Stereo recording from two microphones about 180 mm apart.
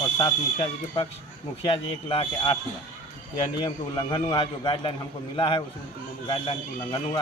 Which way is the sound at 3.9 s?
25° left (ahead or behind).